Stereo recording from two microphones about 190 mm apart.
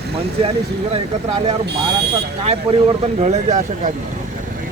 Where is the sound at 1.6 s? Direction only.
60° right (ahead or behind).